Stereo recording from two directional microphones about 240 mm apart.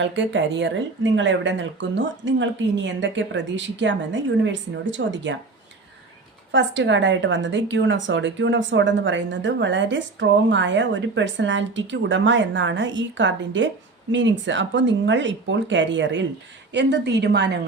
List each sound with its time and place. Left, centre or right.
0.0 s a woman's voice: right
6.5 s a woman's voice: right